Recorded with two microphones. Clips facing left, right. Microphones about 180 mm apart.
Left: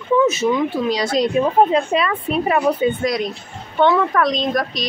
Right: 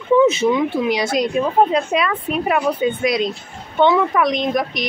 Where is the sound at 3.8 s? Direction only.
10° right (ahead or behind).